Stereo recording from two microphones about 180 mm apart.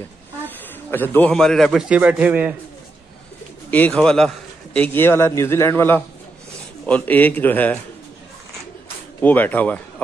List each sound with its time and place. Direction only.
0.8 s a man's voice: 10° left (ahead or behind); by 2.5 s 10° right (ahead or behind)
3.7 s a man's voice: 5° left (ahead or behind)
9.2 s a man's voice: 10° left (ahead or behind)